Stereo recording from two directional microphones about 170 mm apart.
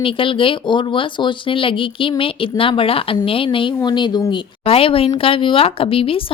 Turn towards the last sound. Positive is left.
turn(degrees=35)  # may be behind; listen again after turning